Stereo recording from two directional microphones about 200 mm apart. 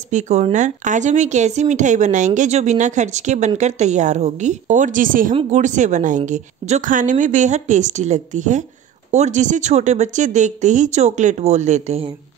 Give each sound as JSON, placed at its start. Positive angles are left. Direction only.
{"t": 0.1, "sound": "a woman's voice", "side_deg": -35}
{"t": 5.3, "sound": "speech", "side_deg": -25}
{"t": 5.6, "sound": "a woman's voice", "side_deg": -35}